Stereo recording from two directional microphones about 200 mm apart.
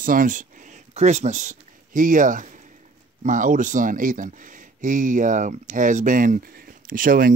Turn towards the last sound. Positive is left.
turn(degrees=-45)  # may be behind; listen again after turning